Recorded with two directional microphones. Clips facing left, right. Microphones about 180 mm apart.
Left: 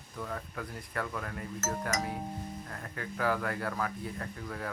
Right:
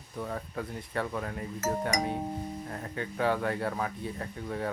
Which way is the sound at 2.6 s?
25° right (ahead or behind).